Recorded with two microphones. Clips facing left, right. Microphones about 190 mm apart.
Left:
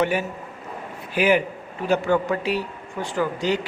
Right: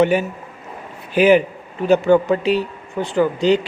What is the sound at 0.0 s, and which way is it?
Speech, 20° right (ahead or behind).